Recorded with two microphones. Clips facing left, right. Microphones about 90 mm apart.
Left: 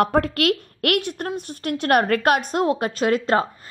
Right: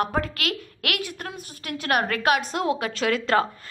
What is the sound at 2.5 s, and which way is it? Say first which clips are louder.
Speech: left 4 dB; 35° left (ahead or behind).